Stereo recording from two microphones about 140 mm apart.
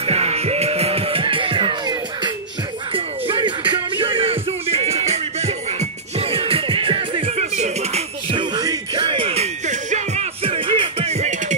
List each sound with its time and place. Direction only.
0.0 s music: 45° right (ahead or behind)
7.3 s music: 55° right (ahead or behind)
8.4 s music: 30° right (ahead or behind); by 11.3 s 50° right (ahead or behind)